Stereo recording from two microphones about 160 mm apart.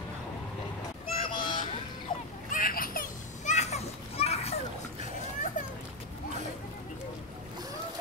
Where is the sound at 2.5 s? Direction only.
60° left (ahead or behind); by 4.5 s 40° left (ahead or behind).